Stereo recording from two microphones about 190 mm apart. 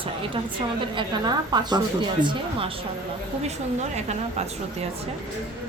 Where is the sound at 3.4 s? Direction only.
35° right (ahead or behind).